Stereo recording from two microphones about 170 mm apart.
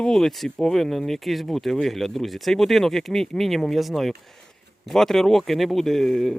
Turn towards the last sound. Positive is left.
turn(degrees=0)  # may be behind; listen again after turning